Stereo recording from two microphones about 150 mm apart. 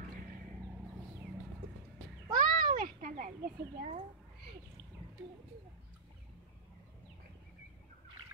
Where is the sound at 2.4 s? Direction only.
65° right (ahead or behind).